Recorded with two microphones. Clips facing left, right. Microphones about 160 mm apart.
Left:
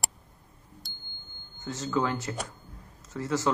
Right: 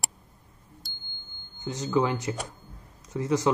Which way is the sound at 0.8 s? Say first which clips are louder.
Even; centre (ahead or behind).